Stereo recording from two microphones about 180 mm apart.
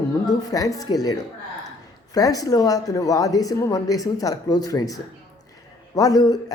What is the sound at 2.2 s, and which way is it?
Speech, 20° left (ahead or behind).